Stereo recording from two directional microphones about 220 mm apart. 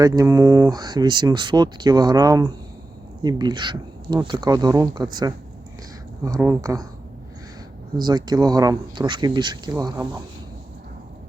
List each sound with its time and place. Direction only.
0.0 s speech: 15° right (ahead or behind)
7.9 s speech: 20° right (ahead or behind)